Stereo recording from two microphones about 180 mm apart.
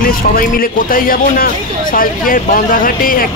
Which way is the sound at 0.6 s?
55° left (ahead or behind).